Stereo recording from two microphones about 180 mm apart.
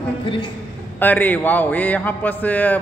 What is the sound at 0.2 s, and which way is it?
Speech, 30° left (ahead or behind).